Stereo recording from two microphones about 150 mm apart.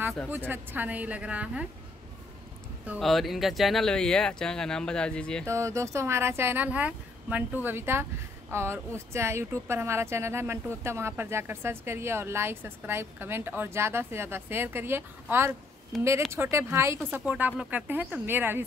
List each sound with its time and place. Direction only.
0.3 s speech: 15° right (ahead or behind)
3.0 s speech: centre (ahead or behind)
5.5 s speech: 20° right (ahead or behind)
15.9 s speech: centre (ahead or behind)
16.3 s speech: 15° right (ahead or behind)